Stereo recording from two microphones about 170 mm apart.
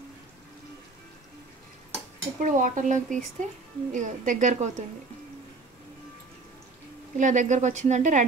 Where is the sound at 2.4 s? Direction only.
50° right (ahead or behind).